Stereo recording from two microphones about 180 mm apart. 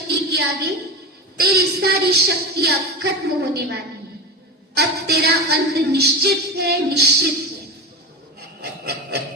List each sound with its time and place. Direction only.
0.1 s a sound: 70° right (ahead or behind)
1.4 s a woman's voice: 65° right (ahead or behind)
8.4 s rub: 65° right (ahead or behind)